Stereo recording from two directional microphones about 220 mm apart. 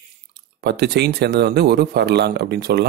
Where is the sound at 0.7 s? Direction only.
50° right (ahead or behind).